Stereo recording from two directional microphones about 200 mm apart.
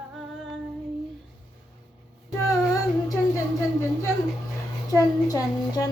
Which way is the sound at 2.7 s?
15° left (ahead or behind).